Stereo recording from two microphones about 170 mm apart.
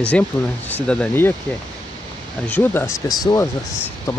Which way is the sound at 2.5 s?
10° left (ahead or behind).